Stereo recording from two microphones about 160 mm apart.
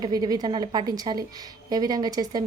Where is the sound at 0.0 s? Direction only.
25° right (ahead or behind).